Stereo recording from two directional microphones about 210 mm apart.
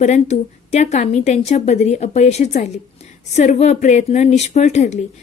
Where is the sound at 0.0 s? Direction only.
35° left (ahead or behind).